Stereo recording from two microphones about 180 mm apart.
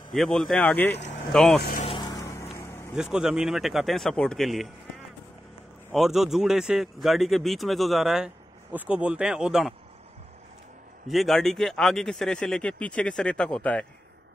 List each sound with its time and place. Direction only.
0.1 s speech: centre (ahead or behind)
0.8 s speech: 70° left (ahead or behind)
1.3 s speech: centre (ahead or behind)
2.0 s vehicle: 20° left (ahead or behind)
3.0 s speech: 5° right (ahead or behind)
5.9 s speech: centre (ahead or behind)
11.1 s speech: centre (ahead or behind)